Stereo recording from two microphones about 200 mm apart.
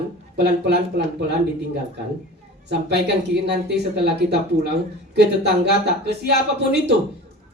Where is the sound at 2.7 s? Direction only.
55° right (ahead or behind).